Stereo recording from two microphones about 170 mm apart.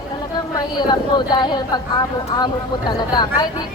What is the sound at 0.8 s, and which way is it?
Speech, 25° left (ahead or behind).